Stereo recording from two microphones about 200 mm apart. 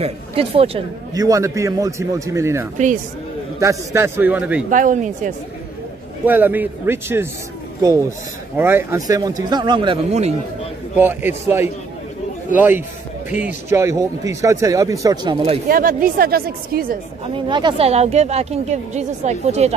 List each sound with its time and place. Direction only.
0.0 s a man's voice: 30° right (ahead or behind)
1.1 s speech: 15° right (ahead or behind)
4.6 s a woman's voice: 40° right (ahead or behind)
6.2 s speech: 10° right (ahead or behind)
8.5 s a man's voice: 10° right (ahead or behind); by 10.3 s 30° right (ahead or behind)
11.0 s speech: 10° right (ahead or behind)
15.7 s speech: 45° right (ahead or behind)
17.5 s a woman's voice: 25° right (ahead or behind)